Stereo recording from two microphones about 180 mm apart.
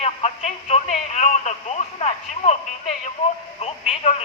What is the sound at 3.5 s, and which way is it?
Speech, 35° left (ahead or behind).